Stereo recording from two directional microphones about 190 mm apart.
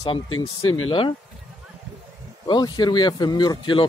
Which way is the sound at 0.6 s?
90° left.